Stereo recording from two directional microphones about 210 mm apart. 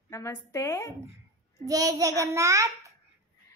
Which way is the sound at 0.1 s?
15° left (ahead or behind).